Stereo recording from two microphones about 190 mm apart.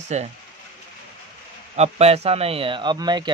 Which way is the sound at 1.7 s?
35° right (ahead or behind).